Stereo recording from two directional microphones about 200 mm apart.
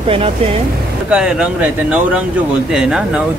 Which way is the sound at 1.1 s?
5° right (ahead or behind).